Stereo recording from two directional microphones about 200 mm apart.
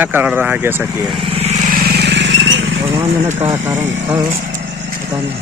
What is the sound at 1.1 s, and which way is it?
Vehicle, 30° right (ahead or behind).